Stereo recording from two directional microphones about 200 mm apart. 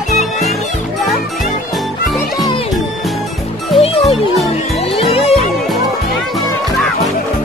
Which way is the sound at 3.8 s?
30° left (ahead or behind).